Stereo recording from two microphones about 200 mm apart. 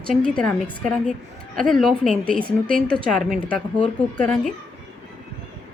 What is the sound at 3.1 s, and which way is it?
A woman's voice, 5° left (ahead or behind).